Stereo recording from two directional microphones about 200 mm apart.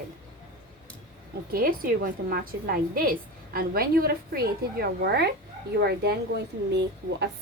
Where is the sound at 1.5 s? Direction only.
45° right (ahead or behind).